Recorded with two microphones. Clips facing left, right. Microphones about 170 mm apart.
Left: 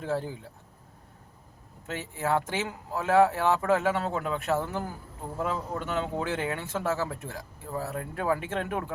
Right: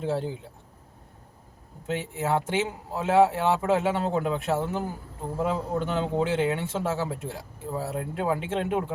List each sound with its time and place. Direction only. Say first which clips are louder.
0.0 s speech: right 3 dB; 20° right (ahead or behind)
1.9 s speech: right 2 dB; 20° right (ahead or behind)